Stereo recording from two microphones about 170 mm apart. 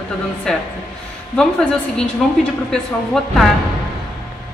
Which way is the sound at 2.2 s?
Centre (ahead or behind).